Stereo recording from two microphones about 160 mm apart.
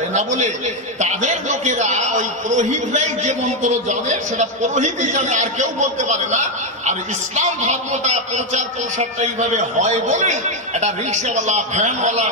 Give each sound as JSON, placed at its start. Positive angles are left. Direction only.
{"t": 0.1, "sound": "a man's voice", "side_deg": -50}